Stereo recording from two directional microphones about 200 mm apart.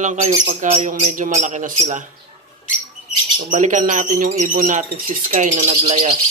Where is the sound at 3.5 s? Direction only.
40° right (ahead or behind).